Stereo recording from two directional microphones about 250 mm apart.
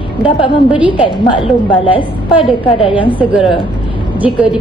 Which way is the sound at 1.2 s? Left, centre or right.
Centre.